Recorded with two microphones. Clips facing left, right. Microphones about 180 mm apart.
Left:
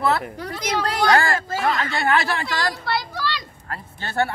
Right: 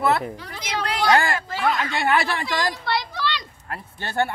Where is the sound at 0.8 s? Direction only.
45° left (ahead or behind).